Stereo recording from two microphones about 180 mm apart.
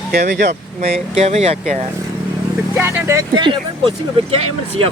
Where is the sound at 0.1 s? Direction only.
65° right (ahead or behind).